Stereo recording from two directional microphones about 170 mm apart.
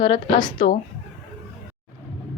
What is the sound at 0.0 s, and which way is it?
Speech, 30° left (ahead or behind).